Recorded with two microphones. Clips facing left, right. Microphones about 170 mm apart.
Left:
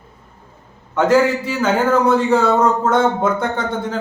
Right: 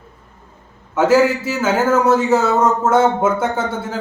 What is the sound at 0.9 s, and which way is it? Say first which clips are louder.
A man's voice: right 1 dB; 5° right (ahead or behind).